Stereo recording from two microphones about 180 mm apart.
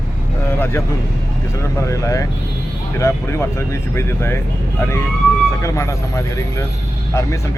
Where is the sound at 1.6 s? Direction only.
15° left (ahead or behind).